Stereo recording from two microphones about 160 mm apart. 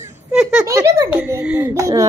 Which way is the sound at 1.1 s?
10° right (ahead or behind).